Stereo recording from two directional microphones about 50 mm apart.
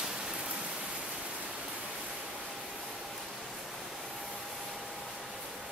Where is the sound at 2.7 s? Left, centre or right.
Centre.